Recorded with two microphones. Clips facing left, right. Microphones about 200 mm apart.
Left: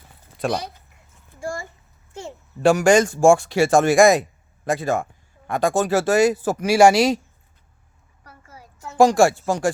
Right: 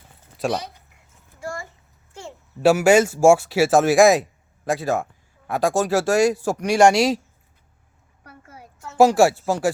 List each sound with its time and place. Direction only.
0.3 s speech: centre (ahead or behind)
2.6 s speech: 5° right (ahead or behind)
8.2 s a sound: 60° right (ahead or behind)
9.0 s speech: 5° right (ahead or behind)